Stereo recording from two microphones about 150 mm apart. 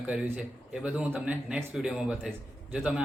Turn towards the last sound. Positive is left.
turn(degrees=-5)  # may be behind; listen again after turning